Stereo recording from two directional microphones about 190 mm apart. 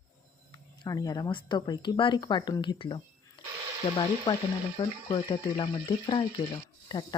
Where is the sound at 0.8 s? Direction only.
20° left (ahead or behind).